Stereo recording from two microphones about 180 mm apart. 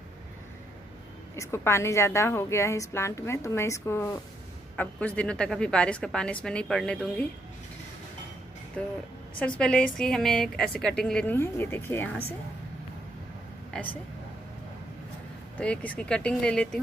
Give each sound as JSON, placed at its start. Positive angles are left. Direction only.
{"t": 1.3, "sound": "a woman's voice", "side_deg": 15}
{"t": 8.8, "sound": "a woman's voice", "side_deg": 5}
{"t": 15.5, "sound": "a woman's voice", "side_deg": 5}